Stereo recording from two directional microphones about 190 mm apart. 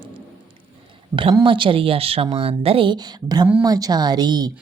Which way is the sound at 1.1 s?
25° right (ahead or behind).